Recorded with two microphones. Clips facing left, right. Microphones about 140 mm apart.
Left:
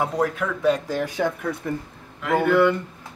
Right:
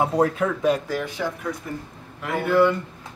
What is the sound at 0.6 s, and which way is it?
Speech, 10° right (ahead or behind).